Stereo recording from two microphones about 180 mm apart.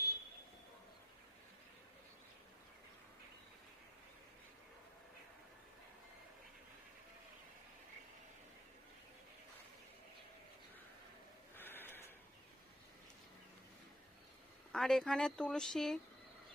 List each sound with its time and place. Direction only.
11.5 s snort: 10° left (ahead or behind)
14.7 s speech: 5° left (ahead or behind)